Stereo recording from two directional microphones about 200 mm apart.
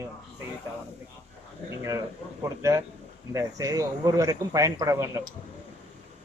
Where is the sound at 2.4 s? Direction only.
15° right (ahead or behind).